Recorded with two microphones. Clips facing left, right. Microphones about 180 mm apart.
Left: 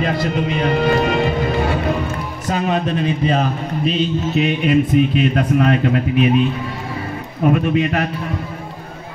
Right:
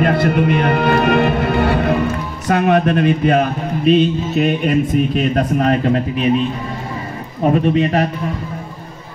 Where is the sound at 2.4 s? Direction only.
65° right (ahead or behind); by 6.0 s 40° right (ahead or behind).